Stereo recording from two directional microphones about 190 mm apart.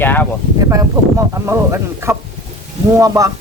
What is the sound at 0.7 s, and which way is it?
Speech, 15° right (ahead or behind).